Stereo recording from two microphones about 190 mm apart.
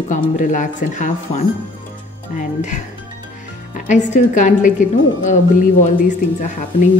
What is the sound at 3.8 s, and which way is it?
Speech, 40° left (ahead or behind).